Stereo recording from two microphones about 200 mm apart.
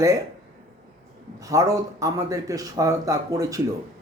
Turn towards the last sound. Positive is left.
turn(degrees=-15)  # may be behind; listen again after turning